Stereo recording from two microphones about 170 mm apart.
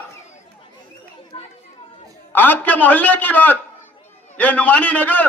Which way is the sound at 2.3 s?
10° left (ahead or behind).